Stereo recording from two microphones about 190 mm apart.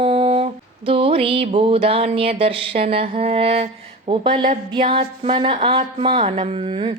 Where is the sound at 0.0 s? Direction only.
30° right (ahead or behind).